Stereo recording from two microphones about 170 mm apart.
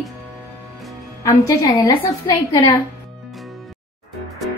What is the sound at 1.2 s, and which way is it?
A woman's voice, 20° left (ahead or behind).